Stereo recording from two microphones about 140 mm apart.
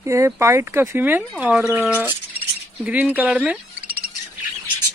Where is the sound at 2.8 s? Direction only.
10° right (ahead or behind).